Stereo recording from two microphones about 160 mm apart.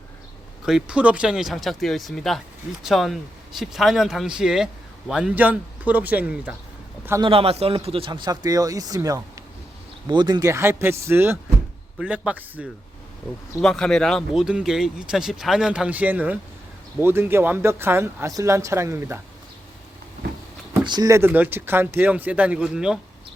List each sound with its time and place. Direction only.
0.6 s speech: 5° right (ahead or behind)
7.2 s speech: 35° right (ahead or behind); by 12.6 s 10° right (ahead or behind)
13.6 s speech: 5° left (ahead or behind); by 19.2 s 15° right (ahead or behind)
20.8 s speech: 25° right (ahead or behind); by 23.0 s 5° right (ahead or behind)